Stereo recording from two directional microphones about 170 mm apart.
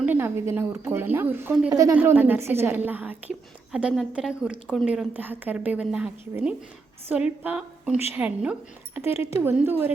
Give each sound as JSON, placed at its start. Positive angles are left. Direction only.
{"t": 0.0, "sound": "a woman's voice", "side_deg": -10}